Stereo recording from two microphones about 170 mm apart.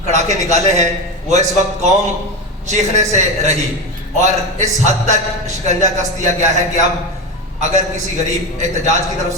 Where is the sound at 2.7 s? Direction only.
45° right (ahead or behind).